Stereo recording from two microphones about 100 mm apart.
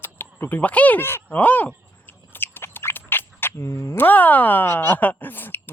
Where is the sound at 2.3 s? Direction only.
20° left (ahead or behind).